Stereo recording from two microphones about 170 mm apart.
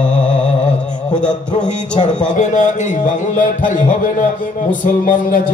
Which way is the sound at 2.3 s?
45° left (ahead or behind).